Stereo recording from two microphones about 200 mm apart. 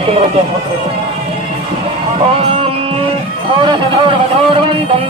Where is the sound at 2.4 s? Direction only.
25° right (ahead or behind).